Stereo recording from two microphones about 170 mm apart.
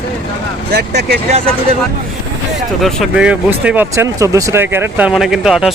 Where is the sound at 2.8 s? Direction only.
5° right (ahead or behind).